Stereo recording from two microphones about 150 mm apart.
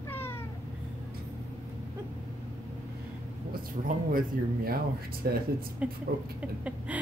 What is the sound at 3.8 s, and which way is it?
Speech, 45° right (ahead or behind).